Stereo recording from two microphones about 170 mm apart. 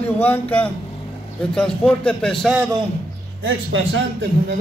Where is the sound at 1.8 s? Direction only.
5° left (ahead or behind).